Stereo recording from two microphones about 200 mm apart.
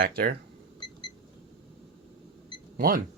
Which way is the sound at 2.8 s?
45° right (ahead or behind).